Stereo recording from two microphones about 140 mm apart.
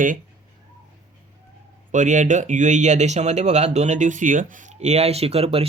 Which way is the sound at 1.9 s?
65° right (ahead or behind).